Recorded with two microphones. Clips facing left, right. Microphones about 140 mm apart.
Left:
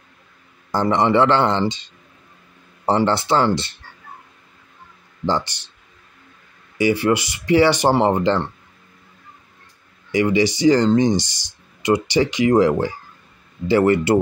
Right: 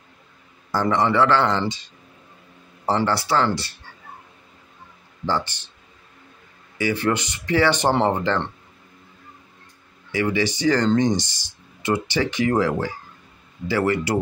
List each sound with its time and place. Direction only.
0.7 s speech: 20° left (ahead or behind)
5.2 s speech: 15° left (ahead or behind)
6.8 s speech: 10° left (ahead or behind)
10.1 s speech: 15° left (ahead or behind)